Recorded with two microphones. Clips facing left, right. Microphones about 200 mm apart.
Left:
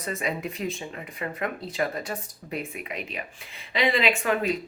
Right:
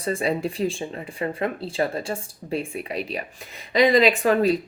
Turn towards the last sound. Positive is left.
turn(degrees=-35)  # may be behind; listen again after turning